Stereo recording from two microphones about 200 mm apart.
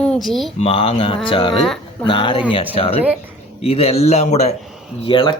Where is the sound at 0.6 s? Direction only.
30° left (ahead or behind).